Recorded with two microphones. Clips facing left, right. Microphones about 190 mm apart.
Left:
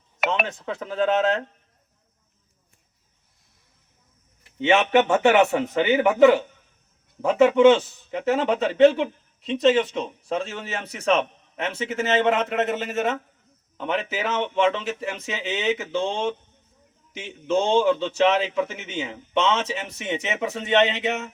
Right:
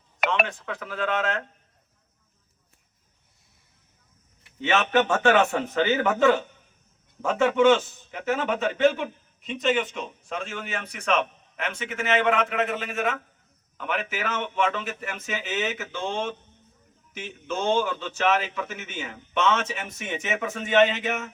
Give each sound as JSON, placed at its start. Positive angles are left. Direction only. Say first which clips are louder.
{"t": 0.2, "sound": "a sound", "louder": "left 1 dB", "side_deg": 5}
{"t": 0.6, "sound": "a man's voice", "louder": "left 6 dB", "side_deg": 30}
{"t": 4.6, "sound": "a man's voice", "louder": "left 4 dB", "side_deg": 25}